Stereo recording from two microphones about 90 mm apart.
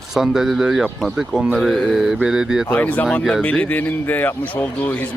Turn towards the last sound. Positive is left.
turn(degrees=20)  # may be behind; listen again after turning